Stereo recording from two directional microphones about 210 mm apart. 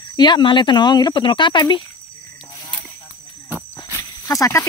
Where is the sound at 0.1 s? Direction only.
20° left (ahead or behind).